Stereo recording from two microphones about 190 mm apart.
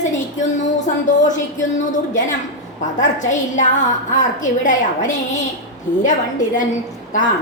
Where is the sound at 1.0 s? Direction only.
40° left (ahead or behind).